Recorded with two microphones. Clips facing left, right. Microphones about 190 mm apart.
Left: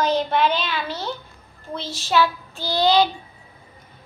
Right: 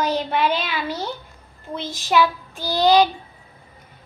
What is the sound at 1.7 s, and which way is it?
Speech, 15° right (ahead or behind).